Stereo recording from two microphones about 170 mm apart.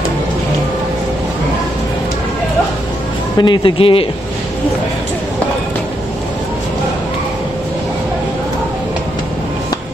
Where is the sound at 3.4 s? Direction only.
30° left (ahead or behind).